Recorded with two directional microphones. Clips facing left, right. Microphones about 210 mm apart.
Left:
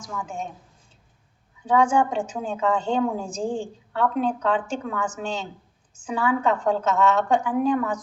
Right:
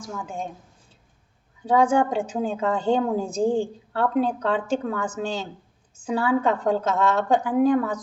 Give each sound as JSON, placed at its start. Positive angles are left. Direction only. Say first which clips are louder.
{"t": 0.1, "sound": "a woman's voice", "louder": "even", "side_deg": -30}
{"t": 1.6, "sound": "a woman's voice", "louder": "right 1 dB", "side_deg": -35}